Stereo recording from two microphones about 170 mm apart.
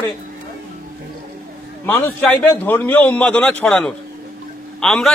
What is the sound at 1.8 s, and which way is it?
A man's voice, 10° left (ahead or behind).